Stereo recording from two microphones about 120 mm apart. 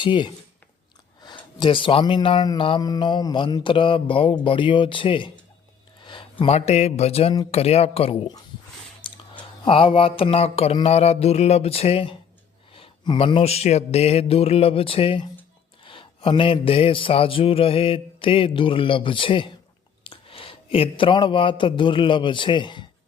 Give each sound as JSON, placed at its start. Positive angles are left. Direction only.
{"t": 0.0, "sound": "speech", "side_deg": 40}
{"t": 2.6, "sound": "a sound", "side_deg": 45}
{"t": 6.4, "sound": "speech", "side_deg": 60}
{"t": 9.0, "sound": "speech", "side_deg": 45}
{"t": 12.7, "sound": "a sound", "side_deg": 50}
{"t": 20.1, "sound": "speech", "side_deg": 50}